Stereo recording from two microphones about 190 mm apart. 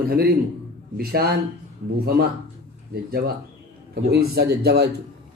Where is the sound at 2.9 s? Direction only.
55° right (ahead or behind).